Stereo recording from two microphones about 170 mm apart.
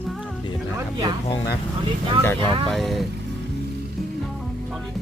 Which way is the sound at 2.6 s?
Centre (ahead or behind).